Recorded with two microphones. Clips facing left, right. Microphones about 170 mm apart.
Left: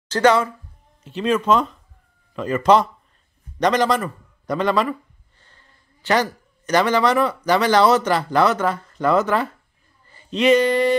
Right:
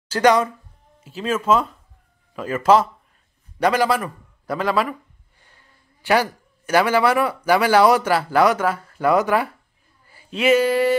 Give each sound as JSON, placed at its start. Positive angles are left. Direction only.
{"t": 0.1, "sound": "speech", "side_deg": -15}
{"t": 1.0, "sound": "a man's voice", "side_deg": -5}
{"t": 10.0, "sound": "a sound", "side_deg": -5}